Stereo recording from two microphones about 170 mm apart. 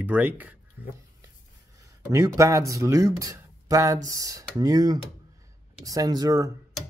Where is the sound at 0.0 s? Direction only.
10° right (ahead or behind).